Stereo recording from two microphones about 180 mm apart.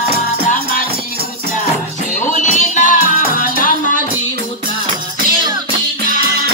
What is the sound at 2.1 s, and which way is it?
Music, 45° left (ahead or behind).